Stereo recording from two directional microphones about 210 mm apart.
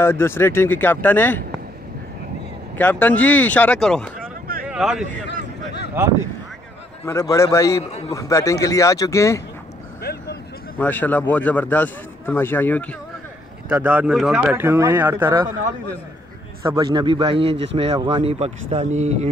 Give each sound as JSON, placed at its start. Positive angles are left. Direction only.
{"t": 0.0, "sound": "a man's voice", "side_deg": 10}
{"t": 2.8, "sound": "a man's voice", "side_deg": 10}
{"t": 5.3, "sound": "a sound", "side_deg": 55}
{"t": 7.1, "sound": "a man's voice", "side_deg": 15}
{"t": 10.8, "sound": "a man's voice", "side_deg": 10}
{"t": 13.7, "sound": "speech", "side_deg": -10}
{"t": 16.6, "sound": "a man's voice", "side_deg": -20}